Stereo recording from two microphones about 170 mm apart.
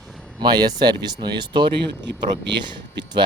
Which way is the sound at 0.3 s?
25° right (ahead or behind).